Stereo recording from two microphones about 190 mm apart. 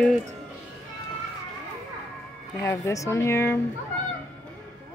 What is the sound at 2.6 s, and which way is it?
Speech, 15° left (ahead or behind).